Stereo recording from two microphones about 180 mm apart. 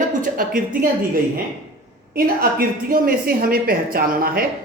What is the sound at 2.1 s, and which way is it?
A woman's voice, 55° right (ahead or behind).